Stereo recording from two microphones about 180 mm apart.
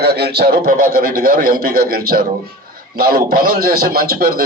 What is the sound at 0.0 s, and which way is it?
A man's voice, 65° right (ahead or behind).